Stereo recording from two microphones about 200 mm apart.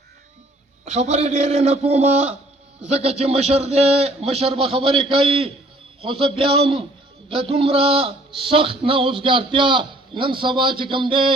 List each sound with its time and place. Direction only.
0.9 s a man's voice: 30° right (ahead or behind)